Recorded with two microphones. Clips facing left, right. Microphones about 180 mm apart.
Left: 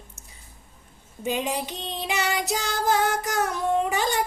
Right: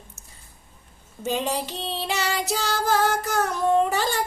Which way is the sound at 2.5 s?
15° left (ahead or behind).